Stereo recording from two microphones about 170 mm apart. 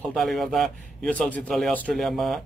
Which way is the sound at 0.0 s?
Centre (ahead or behind).